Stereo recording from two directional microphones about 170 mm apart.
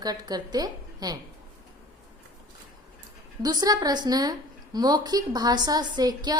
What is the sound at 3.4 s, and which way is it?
A woman's voice, 25° right (ahead or behind).